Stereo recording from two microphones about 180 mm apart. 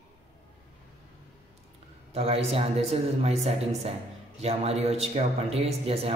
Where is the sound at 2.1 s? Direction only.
35° right (ahead or behind).